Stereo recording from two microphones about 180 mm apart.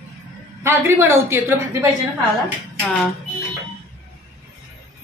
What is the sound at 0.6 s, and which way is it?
A woman's voice, 15° right (ahead or behind).